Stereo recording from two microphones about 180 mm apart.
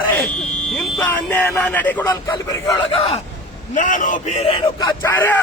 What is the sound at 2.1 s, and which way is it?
Speech, 20° left (ahead or behind).